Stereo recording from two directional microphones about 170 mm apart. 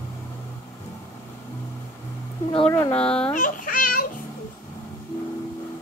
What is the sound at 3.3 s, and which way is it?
Speech, 50° left (ahead or behind).